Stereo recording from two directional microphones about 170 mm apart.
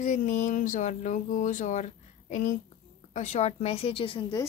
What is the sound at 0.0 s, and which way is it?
A woman's voice, 45° left (ahead or behind).